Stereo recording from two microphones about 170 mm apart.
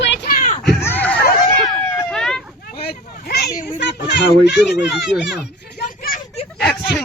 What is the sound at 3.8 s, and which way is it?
Speech, 90° left.